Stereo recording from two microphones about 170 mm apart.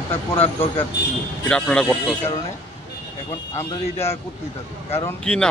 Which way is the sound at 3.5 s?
15° left (ahead or behind).